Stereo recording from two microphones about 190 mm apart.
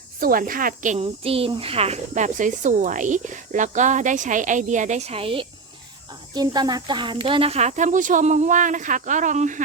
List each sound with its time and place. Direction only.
0.2 s a woman's voice: 45° right (ahead or behind)